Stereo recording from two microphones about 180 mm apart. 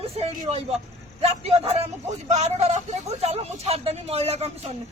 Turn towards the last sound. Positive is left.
turn(degrees=-35)  # may be behind; listen again after turning